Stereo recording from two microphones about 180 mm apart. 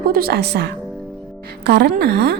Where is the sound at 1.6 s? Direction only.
65° right (ahead or behind).